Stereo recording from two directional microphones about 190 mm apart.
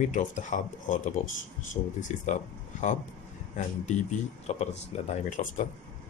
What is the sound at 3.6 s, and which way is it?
Speech, 40° left (ahead or behind).